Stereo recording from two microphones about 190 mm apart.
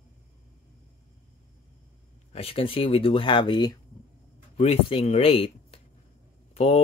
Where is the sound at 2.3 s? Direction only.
30° left (ahead or behind).